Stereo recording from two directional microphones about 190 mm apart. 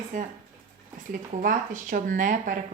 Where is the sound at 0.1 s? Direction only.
40° right (ahead or behind).